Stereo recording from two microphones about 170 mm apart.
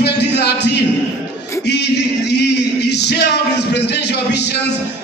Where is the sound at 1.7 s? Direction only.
80° left.